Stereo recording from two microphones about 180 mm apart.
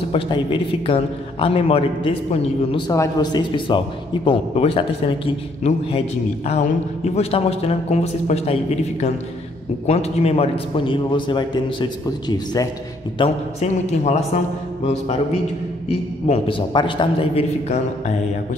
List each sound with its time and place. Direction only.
0.1 s a man's voice: 30° left (ahead or behind)
9.8 s a man's voice: 35° left (ahead or behind)
13.2 s a man's voice: 35° left (ahead or behind)
16.3 s a man's voice: 30° left (ahead or behind)